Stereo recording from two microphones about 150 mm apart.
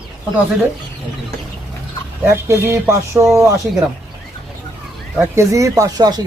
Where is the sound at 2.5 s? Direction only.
15° right (ahead or behind).